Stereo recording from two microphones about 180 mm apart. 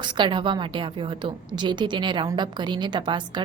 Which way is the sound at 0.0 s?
25° right (ahead or behind).